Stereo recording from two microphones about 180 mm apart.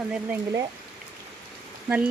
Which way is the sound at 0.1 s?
10° right (ahead or behind).